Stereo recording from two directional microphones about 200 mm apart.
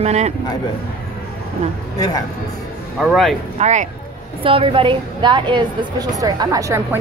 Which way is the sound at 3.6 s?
35° right (ahead or behind).